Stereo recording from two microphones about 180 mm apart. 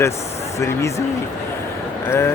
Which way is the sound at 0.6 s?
15° left (ahead or behind).